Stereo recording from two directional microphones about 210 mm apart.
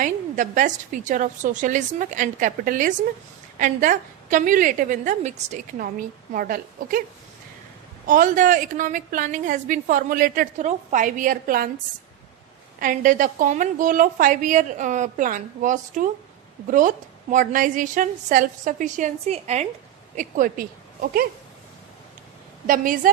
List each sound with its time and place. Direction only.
0.0 s a woman's voice: 35° right (ahead or behind)
8.0 s a woman's voice: 40° right (ahead or behind)
12.8 s a woman's voice: 40° right (ahead or behind)
22.6 s a woman's voice: 40° right (ahead or behind)